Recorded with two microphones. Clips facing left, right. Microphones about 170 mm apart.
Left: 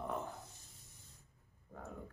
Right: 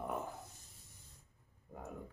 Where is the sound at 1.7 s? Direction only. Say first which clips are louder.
Right 1 dB; 20° right (ahead or behind).